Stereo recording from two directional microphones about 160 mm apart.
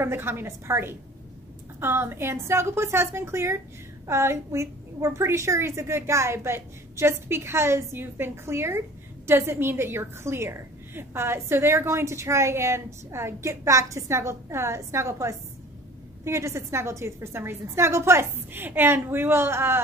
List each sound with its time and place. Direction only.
0.0 s a woman's voice: 15° right (ahead or behind)